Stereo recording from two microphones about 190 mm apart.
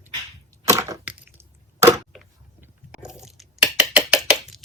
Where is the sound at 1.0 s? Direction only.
10° right (ahead or behind).